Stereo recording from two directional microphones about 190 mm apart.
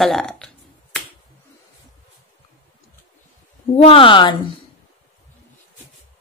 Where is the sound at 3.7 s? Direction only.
30° left (ahead or behind).